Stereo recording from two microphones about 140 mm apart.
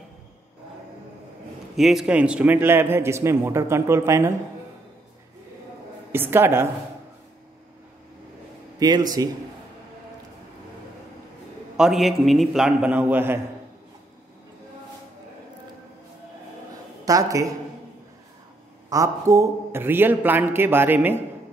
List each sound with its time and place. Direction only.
1.8 s a man's voice: centre (ahead or behind); by 4.3 s 20° right (ahead or behind)
6.1 s a man's voice: 15° right (ahead or behind)
8.7 s speech: 30° right (ahead or behind)
11.7 s a man's voice: 5° right (ahead or behind)
17.0 s speech: 25° right (ahead or behind)
18.9 s a man's voice: 25° right (ahead or behind)